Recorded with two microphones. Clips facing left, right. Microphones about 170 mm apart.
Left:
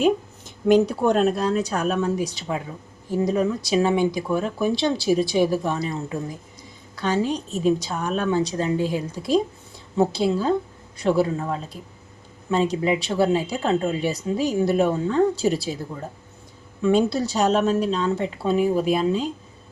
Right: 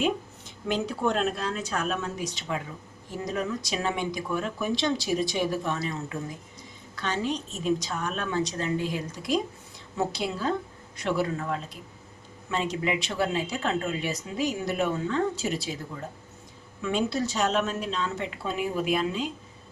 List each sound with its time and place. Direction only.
0.7 s speech: 40° left (ahead or behind)
6.9 s speech: 35° left (ahead or behind)
16.8 s speech: 35° left (ahead or behind)